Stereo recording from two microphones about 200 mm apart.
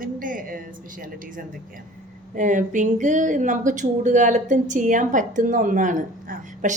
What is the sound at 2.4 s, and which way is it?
Speech, 40° right (ahead or behind).